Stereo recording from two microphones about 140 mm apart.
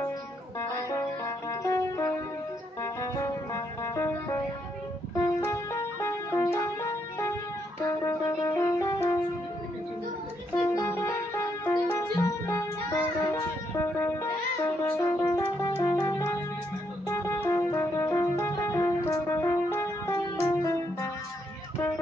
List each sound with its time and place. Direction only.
0.6 s music: 20° left (ahead or behind)
5.4 s music: 20° left (ahead or behind)
10.6 s music: 20° left (ahead or behind)